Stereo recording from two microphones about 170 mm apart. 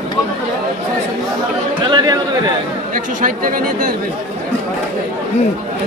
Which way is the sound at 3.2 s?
50° right (ahead or behind).